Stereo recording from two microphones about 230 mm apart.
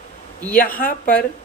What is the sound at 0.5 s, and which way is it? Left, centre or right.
Speech, left.